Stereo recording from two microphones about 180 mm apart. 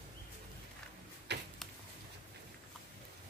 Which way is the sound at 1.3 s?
70° right (ahead or behind).